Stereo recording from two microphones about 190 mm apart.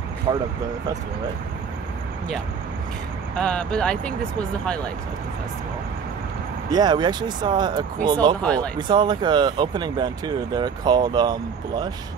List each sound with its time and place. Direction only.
0.3 s speech: 25° right (ahead or behind)
3.3 s speech: 5° left (ahead or behind)
6.7 s speech: 20° right (ahead or behind)